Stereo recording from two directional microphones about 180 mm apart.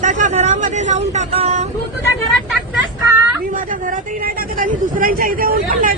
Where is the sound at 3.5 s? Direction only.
50° right (ahead or behind).